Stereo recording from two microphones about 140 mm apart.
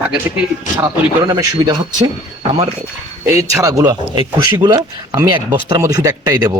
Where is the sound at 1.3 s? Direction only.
30° right (ahead or behind).